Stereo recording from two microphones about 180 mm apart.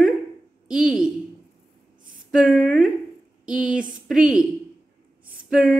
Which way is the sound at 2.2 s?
5° right (ahead or behind).